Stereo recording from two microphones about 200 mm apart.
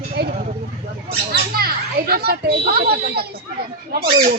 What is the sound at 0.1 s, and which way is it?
Vehicle, 55° right (ahead or behind).